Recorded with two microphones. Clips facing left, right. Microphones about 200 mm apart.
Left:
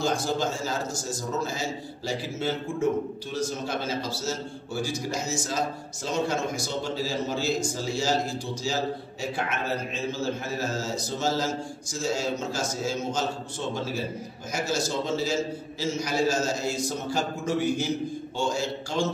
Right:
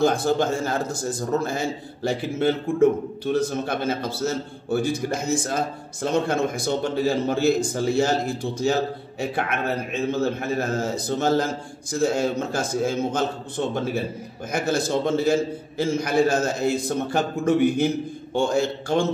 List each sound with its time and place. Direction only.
0.0 s a man's voice: 55° right (ahead or behind)
14.5 s a man's voice: 55° right (ahead or behind)